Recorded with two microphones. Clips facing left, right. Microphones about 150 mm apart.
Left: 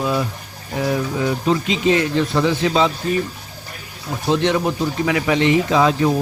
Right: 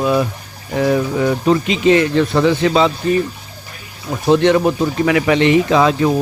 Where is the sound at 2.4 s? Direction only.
65° right (ahead or behind).